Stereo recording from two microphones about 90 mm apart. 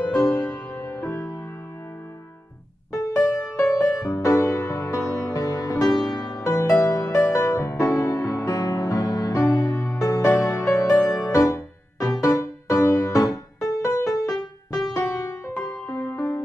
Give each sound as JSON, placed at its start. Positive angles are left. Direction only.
{"t": 0.0, "sound": "music", "side_deg": 20}
{"t": 2.9, "sound": "music", "side_deg": 35}